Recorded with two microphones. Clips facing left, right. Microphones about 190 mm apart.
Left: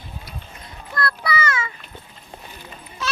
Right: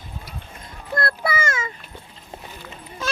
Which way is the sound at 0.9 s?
50° right (ahead or behind).